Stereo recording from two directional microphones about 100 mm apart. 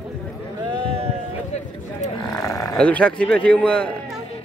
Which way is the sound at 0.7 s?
70° right (ahead or behind).